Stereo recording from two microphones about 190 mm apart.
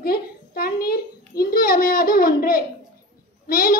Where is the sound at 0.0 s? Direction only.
50° left (ahead or behind).